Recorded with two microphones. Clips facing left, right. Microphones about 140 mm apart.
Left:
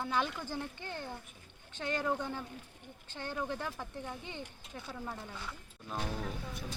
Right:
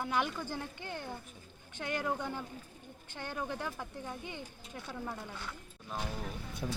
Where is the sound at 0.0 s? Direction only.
15° right (ahead or behind).